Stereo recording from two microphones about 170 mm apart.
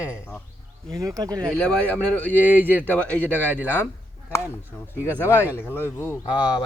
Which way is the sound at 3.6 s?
15° left (ahead or behind).